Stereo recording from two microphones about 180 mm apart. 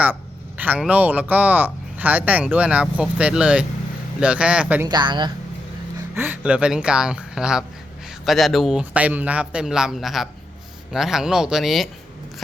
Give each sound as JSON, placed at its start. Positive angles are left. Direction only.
{"t": 0.0, "sound": "speech", "side_deg": -10}
{"t": 4.9, "sound": "speech", "side_deg": -25}
{"t": 6.1, "sound": "speech", "side_deg": -10}